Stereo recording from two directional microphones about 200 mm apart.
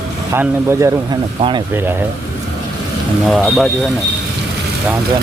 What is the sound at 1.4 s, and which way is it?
Speech, 25° right (ahead or behind).